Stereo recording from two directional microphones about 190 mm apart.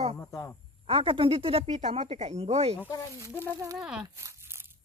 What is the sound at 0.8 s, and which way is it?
Speech, 30° right (ahead or behind).